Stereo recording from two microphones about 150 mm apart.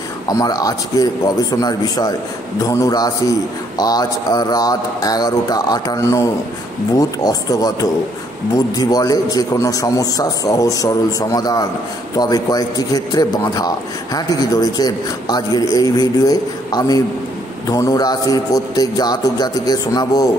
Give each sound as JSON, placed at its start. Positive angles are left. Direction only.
{"t": 0.3, "sound": "a man's voice", "side_deg": 25}
{"t": 8.7, "sound": "a man's voice", "side_deg": 25}